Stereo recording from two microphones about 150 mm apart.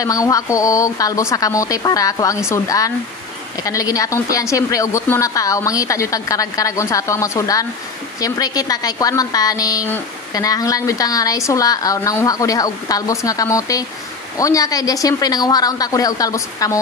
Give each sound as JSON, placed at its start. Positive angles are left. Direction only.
{"t": 0.0, "sound": "a woman's voice", "side_deg": 20}